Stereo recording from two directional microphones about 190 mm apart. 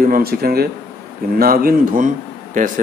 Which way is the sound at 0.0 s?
50° right (ahead or behind).